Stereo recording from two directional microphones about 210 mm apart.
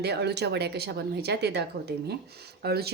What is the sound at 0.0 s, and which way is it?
A woman's voice, 50° right (ahead or behind).